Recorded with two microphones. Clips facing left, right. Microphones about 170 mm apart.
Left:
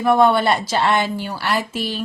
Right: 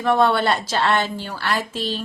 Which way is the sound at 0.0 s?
10° left (ahead or behind).